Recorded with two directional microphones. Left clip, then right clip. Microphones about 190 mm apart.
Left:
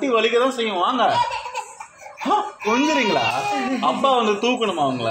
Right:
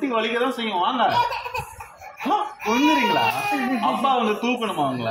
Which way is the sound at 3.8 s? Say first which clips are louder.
Left 3 dB; 50° left (ahead or behind).